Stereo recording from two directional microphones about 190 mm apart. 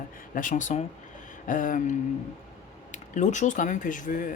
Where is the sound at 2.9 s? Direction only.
40° left (ahead or behind).